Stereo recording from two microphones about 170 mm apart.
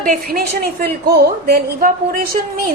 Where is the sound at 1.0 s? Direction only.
70° right (ahead or behind).